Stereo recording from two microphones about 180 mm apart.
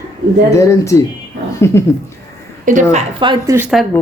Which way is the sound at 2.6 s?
45° right (ahead or behind).